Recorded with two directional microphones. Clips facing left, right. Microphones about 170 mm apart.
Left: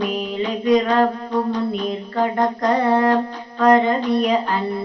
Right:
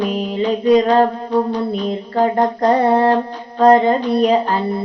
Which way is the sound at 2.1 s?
35° right (ahead or behind).